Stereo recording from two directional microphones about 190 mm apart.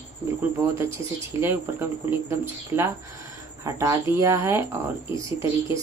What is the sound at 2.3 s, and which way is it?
Speech, 15° right (ahead or behind).